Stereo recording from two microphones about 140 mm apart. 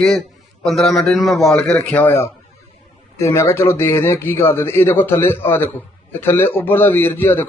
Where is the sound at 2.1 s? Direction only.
20° left (ahead or behind).